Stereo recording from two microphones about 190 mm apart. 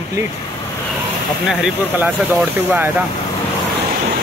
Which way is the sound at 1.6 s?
5° right (ahead or behind).